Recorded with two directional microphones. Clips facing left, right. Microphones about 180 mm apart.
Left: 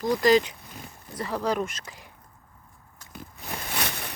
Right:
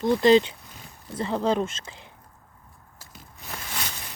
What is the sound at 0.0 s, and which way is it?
Speech, 25° right (ahead or behind).